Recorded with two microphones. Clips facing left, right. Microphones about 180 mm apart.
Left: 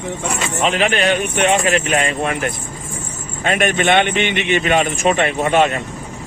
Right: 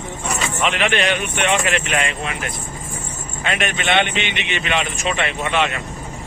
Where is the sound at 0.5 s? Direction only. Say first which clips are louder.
Left 3 dB; 35° left (ahead or behind).